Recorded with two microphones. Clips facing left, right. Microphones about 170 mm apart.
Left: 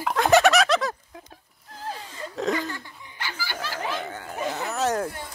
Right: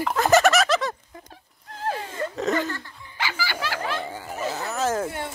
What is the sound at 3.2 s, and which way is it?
Snicker, 90° right.